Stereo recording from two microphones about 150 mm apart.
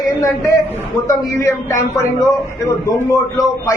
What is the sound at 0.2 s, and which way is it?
A man's voice, 20° left (ahead or behind).